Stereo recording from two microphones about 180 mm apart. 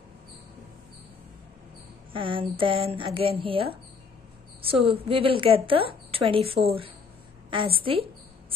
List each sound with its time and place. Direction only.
2.1 s a woman's voice: 30° right (ahead or behind)